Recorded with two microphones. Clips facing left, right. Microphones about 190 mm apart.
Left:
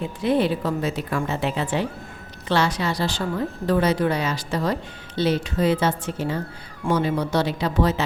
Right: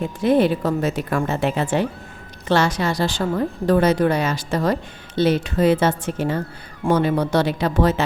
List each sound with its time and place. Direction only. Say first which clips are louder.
0.0 s a woman's voice: right 4 dB; 45° right (ahead or behind)